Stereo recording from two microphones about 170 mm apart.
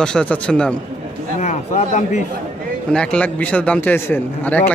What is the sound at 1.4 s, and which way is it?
Speech, 45° left (ahead or behind).